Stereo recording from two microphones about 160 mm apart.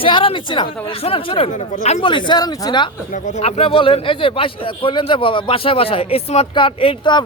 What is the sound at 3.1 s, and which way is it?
A man's voice, 50° left (ahead or behind).